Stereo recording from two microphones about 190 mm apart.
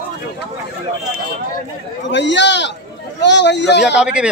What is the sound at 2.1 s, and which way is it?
A man's voice, 70° left (ahead or behind).